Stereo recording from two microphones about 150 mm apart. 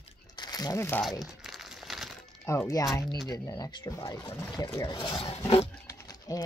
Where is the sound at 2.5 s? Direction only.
20° left (ahead or behind); by 5.6 s 40° left (ahead or behind).